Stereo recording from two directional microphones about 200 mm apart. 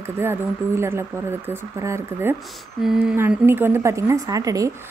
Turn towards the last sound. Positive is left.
turn(degrees=-15)  # may be behind; listen again after turning